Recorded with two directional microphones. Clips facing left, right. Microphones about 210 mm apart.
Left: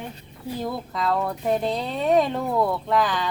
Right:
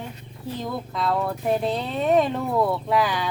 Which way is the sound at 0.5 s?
5° left (ahead or behind).